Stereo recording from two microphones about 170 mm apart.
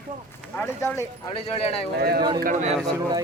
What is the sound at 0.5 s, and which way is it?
Speech, 10° left (ahead or behind).